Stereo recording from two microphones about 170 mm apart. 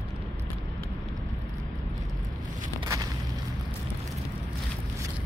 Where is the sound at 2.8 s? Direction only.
25° right (ahead or behind).